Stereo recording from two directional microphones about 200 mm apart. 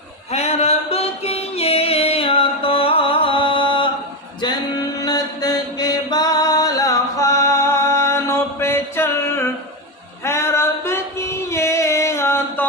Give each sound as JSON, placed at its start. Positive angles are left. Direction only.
{"t": 0.3, "sound": "music", "side_deg": 30}
{"t": 4.9, "sound": "mantra", "side_deg": 20}
{"t": 10.2, "sound": "music", "side_deg": 10}